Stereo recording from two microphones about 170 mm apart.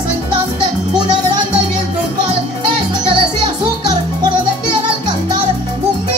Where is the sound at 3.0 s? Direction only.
30° right (ahead or behind).